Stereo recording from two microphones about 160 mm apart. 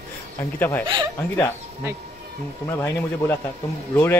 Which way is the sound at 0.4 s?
15° left (ahead or behind).